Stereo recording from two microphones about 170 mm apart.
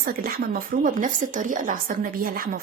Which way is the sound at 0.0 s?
60° right (ahead or behind).